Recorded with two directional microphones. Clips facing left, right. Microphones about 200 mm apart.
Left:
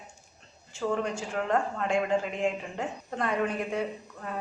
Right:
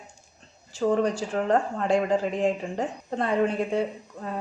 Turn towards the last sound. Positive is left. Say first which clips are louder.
# right 3 dB
turn(degrees=-30)  # may be behind; listen again after turning